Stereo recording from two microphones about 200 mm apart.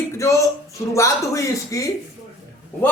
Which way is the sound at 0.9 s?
15° left (ahead or behind).